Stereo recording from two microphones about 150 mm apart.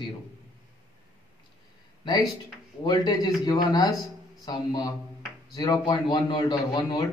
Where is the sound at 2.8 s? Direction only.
25° left (ahead or behind).